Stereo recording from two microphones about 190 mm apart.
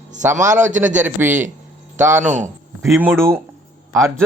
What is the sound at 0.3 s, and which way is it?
Speech, 40° right (ahead or behind).